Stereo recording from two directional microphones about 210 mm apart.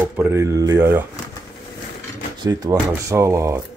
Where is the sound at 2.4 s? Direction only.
20° right (ahead or behind).